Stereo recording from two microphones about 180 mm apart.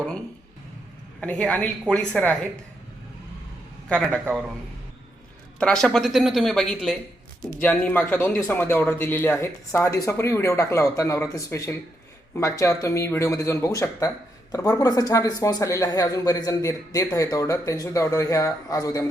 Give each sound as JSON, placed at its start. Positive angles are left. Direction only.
{"t": 1.2, "sound": "speech", "side_deg": 5}
{"t": 3.8, "sound": "speech", "side_deg": 5}
{"t": 5.5, "sound": "speech", "side_deg": 5}